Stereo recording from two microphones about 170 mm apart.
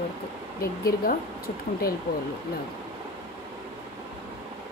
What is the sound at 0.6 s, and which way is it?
Speech, 60° left (ahead or behind).